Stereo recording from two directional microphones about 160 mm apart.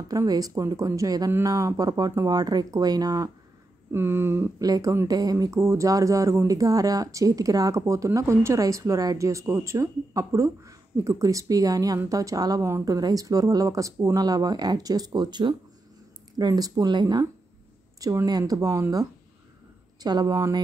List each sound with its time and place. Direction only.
0.1 s speech: 20° right (ahead or behind)